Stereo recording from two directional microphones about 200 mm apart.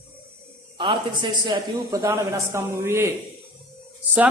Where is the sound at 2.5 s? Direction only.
15° right (ahead or behind).